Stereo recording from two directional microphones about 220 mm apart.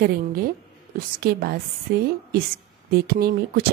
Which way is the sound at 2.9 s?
45° right (ahead or behind).